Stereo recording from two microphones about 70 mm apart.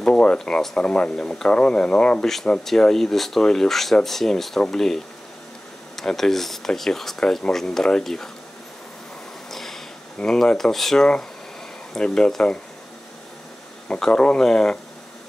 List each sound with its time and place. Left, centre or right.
0.0 s speech: centre
9.5 s speech: centre
13.8 s speech: centre